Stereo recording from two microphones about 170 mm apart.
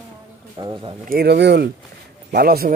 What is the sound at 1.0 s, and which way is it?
Speech, 65° right (ahead or behind).